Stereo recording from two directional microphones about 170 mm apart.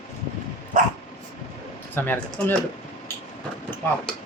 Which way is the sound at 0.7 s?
50° right (ahead or behind).